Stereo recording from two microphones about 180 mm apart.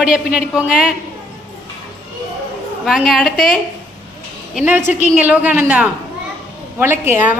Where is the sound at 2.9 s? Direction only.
Centre (ahead or behind).